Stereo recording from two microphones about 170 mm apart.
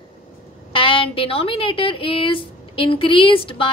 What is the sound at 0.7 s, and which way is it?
A woman's voice, 30° left (ahead or behind).